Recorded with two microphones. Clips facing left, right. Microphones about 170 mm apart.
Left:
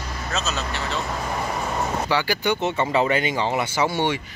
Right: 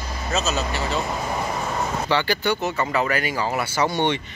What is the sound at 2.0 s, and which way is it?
Speech, 10° left (ahead or behind).